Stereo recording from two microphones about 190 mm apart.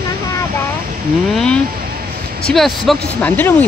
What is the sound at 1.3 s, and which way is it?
Speech, 5° left (ahead or behind).